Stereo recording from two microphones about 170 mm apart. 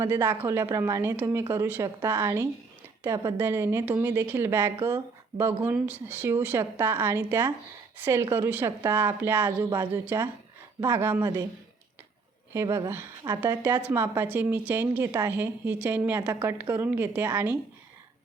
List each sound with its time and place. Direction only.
0.0 s speech: 15° right (ahead or behind)
12.5 s speech: 20° right (ahead or behind)